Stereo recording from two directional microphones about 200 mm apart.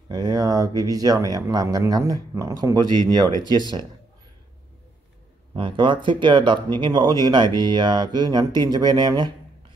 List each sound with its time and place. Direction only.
0.1 s speech: 20° right (ahead or behind)
5.5 s speech: 25° right (ahead or behind)